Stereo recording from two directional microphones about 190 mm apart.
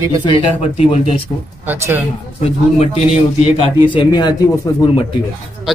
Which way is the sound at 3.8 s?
25° left (ahead or behind).